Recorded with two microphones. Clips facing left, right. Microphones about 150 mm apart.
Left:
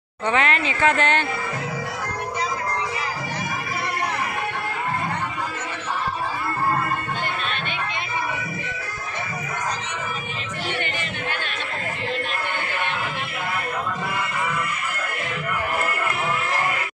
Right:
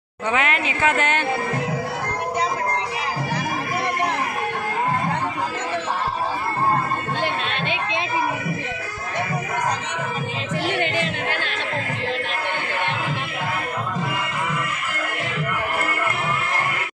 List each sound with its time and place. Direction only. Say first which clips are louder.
0.3 s speech: even; 10° right (ahead or behind)
7.6 s a sound: right 4 dB; 90° right
10.8 s music: right 6 dB; 90° right